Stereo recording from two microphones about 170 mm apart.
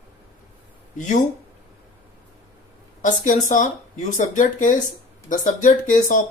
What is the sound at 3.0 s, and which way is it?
Speech, 50° left (ahead or behind).